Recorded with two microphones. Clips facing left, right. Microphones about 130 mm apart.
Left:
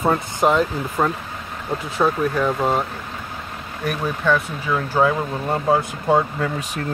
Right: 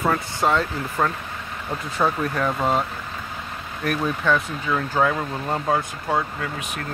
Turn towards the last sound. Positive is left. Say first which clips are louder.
# left 5 dB
turn(degrees=25)  # may be behind; listen again after turning